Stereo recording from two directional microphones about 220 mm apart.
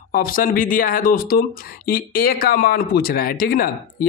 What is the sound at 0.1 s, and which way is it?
Speech, 40° left (ahead or behind).